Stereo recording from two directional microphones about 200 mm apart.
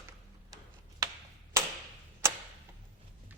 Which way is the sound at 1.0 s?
15° right (ahead or behind).